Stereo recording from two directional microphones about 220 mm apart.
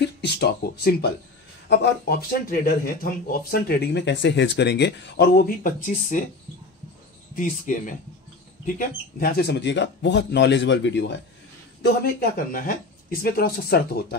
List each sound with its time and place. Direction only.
0.0 s speech: 50° left (ahead or behind)
7.3 s speech: 35° left (ahead or behind)